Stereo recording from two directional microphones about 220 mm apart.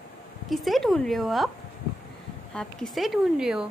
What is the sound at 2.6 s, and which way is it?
Speech, centre (ahead or behind).